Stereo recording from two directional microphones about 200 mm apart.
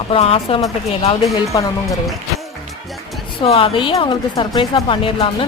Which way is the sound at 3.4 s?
25° left (ahead or behind).